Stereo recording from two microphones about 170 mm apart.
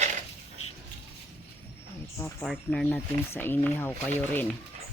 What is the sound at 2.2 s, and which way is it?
Speech, 5° left (ahead or behind).